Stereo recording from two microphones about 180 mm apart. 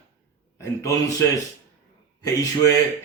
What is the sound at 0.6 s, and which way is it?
Speech, 15° left (ahead or behind).